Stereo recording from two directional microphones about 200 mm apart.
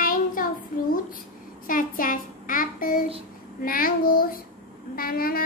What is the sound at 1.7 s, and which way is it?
A child's voice, 45° left (ahead or behind).